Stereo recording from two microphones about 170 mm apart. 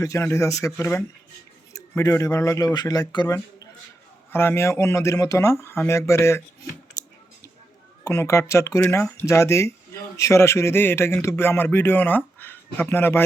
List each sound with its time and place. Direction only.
0.0 s a man's voice: 15° left (ahead or behind)
8.0 s a man's voice: 15° left (ahead or behind)